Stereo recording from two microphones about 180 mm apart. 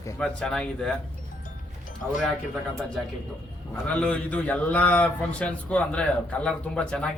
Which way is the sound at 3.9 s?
5° left (ahead or behind).